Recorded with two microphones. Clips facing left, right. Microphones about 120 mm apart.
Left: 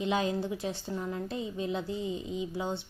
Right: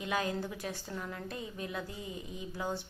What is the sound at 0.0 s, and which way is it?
A woman's voice, 25° left (ahead or behind).